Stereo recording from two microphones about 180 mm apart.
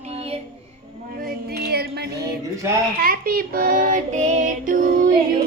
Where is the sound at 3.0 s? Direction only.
55° right (ahead or behind).